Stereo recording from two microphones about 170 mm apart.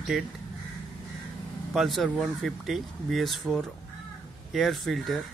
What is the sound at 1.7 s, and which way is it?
Speech, centre (ahead or behind).